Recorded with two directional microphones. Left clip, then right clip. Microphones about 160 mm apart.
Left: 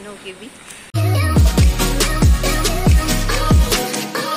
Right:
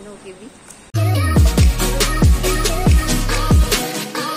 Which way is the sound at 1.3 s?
Centre (ahead or behind).